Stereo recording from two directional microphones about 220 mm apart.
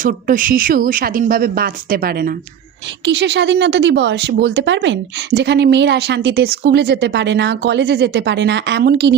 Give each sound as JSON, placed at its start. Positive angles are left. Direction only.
{"t": 0.0, "sound": "speech", "side_deg": -40}